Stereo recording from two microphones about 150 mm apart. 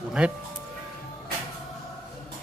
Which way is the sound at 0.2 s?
5° right (ahead or behind).